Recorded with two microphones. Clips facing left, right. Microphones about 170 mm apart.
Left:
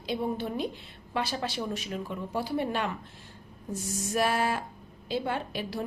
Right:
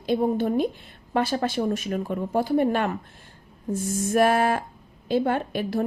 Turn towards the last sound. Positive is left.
turn(degrees=-50)  # may be behind; listen again after turning